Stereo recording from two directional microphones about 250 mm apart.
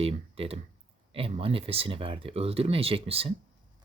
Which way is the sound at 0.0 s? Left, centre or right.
Right.